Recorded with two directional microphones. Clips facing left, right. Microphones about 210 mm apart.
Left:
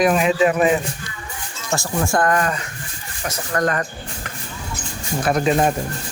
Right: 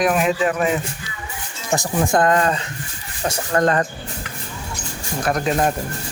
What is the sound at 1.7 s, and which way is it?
Speech, 20° right (ahead or behind).